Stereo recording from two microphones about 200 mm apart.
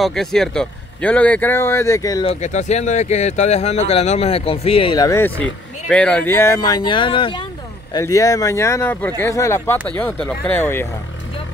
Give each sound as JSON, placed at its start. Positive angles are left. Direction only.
{"t": 0.0, "sound": "a man's voice", "side_deg": 0}
{"t": 2.2, "sound": "a man's voice", "side_deg": 35}